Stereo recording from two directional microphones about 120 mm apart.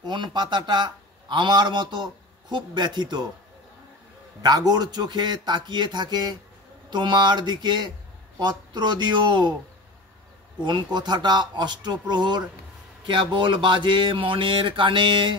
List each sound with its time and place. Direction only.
0.0 s speech: 40° right (ahead or behind)
4.4 s speech: 35° right (ahead or behind)
10.6 s speech: 40° right (ahead or behind)